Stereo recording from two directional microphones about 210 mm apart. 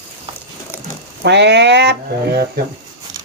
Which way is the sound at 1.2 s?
55° right (ahead or behind).